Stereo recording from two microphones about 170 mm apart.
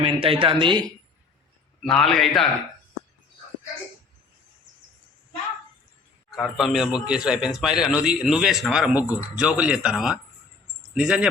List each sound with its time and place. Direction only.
0.0 s speech: 30° right (ahead or behind)
1.8 s a man's voice: 5° left (ahead or behind)
6.3 s a man's voice: centre (ahead or behind)